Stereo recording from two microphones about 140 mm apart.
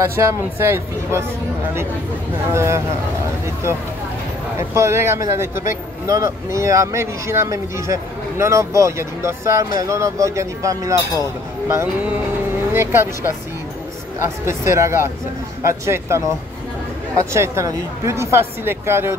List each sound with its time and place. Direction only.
0.1 s speech: 20° right (ahead or behind)
2.5 s speech: 20° right (ahead or behind)
4.6 s speech: 20° right (ahead or behind)